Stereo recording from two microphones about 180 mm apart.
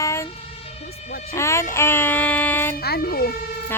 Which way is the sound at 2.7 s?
55° left (ahead or behind).